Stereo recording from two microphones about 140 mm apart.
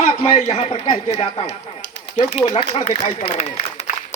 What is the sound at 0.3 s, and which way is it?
A man's voice, 50° left (ahead or behind).